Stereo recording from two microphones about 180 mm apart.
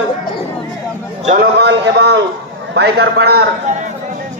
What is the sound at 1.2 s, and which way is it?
Speech, 50° right (ahead or behind).